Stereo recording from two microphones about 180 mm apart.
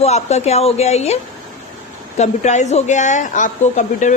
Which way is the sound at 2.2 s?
40° left (ahead or behind).